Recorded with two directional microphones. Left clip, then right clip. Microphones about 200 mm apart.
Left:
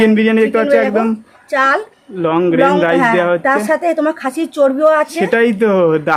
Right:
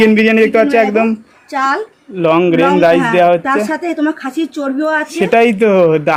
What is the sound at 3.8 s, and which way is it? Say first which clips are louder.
A woman's voice: left 2 dB; 60° left (ahead or behind).